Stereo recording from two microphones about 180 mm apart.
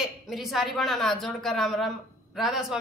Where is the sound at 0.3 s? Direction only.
Centre (ahead or behind).